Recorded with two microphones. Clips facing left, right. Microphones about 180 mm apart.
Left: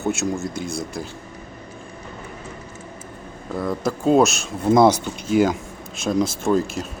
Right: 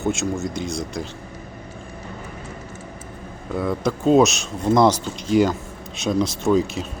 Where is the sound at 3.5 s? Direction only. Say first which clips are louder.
Right 1 dB; centre (ahead or behind).